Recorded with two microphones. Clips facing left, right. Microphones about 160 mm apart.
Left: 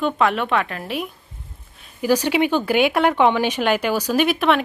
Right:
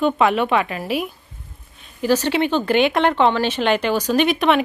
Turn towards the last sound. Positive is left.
turn(degrees=0)  # may be behind; listen again after turning